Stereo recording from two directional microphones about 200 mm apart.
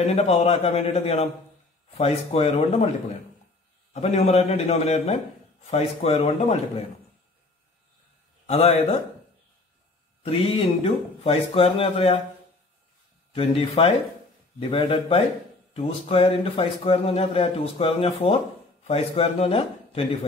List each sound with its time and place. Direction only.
0.0 s a man's voice: 30° left (ahead or behind)
3.9 s a man's voice: 30° left (ahead or behind)
8.5 s a man's voice: 30° left (ahead or behind)
10.2 s speech: 30° left (ahead or behind)
13.3 s speech: 30° left (ahead or behind)